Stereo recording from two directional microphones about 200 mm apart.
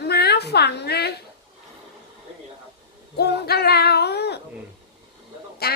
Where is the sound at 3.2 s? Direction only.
55° left (ahead or behind).